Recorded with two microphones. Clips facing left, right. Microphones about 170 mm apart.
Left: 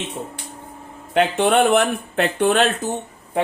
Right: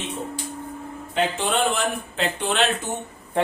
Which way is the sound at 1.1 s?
65° left (ahead or behind).